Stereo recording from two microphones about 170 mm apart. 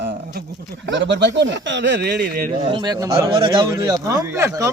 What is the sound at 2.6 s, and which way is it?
Speech, 25° right (ahead or behind).